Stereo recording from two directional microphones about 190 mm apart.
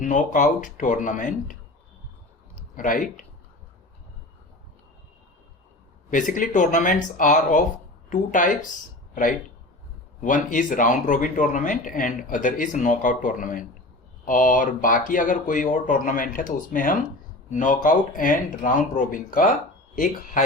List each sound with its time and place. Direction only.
0.0 s speech: 40° left (ahead or behind)
2.6 s speech: 45° left (ahead or behind)
6.1 s speech: 45° left (ahead or behind)
10.2 s speech: 40° left (ahead or behind)